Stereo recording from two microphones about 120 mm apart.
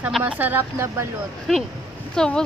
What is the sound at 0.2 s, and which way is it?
Speech, 15° right (ahead or behind).